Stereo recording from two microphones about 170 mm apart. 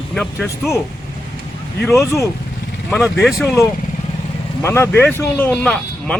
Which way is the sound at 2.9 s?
Centre (ahead or behind).